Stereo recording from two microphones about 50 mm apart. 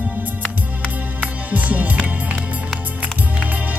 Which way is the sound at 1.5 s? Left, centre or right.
Right.